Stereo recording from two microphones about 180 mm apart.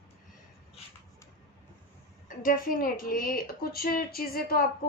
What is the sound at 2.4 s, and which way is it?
A woman's voice, 50° left (ahead or behind).